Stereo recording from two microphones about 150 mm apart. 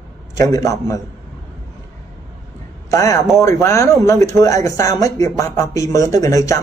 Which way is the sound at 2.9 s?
20° left (ahead or behind).